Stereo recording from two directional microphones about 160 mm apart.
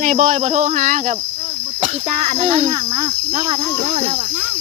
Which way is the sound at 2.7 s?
30° right (ahead or behind).